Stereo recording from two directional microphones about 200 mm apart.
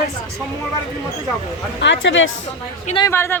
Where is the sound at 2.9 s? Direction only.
15° left (ahead or behind).